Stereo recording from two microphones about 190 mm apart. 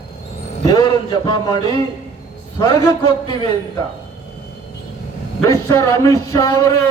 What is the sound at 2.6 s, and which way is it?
Speech, 20° left (ahead or behind).